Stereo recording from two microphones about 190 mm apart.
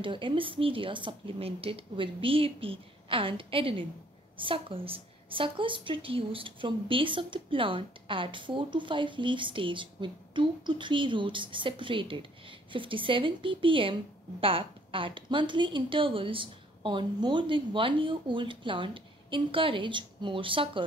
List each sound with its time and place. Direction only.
0.0 s a woman's voice: 25° right (ahead or behind)